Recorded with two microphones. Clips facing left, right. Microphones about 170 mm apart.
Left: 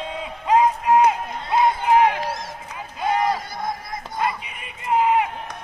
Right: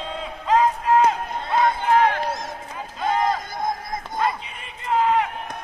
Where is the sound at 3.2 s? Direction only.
50° right (ahead or behind).